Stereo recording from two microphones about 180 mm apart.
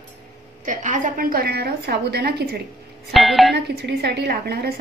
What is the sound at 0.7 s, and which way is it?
A woman's voice, 45° right (ahead or behind).